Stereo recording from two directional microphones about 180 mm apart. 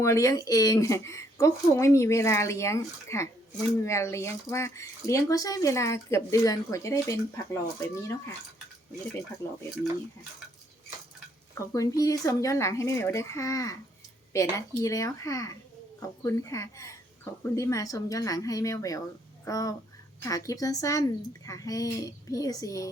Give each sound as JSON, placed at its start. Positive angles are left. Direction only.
{"t": 0.0, "sound": "speech", "side_deg": 15}
{"t": 11.5, "sound": "speech", "side_deg": 15}
{"t": 14.8, "sound": "a woman's voice", "side_deg": 15}